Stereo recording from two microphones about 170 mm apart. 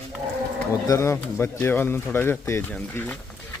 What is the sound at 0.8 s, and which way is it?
Speech, 15° left (ahead or behind).